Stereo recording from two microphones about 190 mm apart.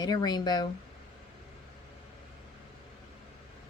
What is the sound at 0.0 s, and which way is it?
Speech, 20° left (ahead or behind).